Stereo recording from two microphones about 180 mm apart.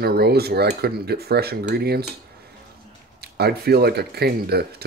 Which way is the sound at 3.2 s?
60° right (ahead or behind).